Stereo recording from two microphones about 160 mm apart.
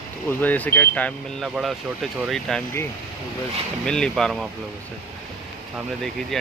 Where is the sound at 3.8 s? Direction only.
5° left (ahead or behind).